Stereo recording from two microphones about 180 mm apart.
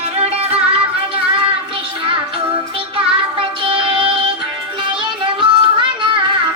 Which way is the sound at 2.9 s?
30° right (ahead or behind).